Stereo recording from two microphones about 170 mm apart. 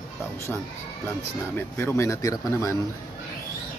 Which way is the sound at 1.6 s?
15° left (ahead or behind).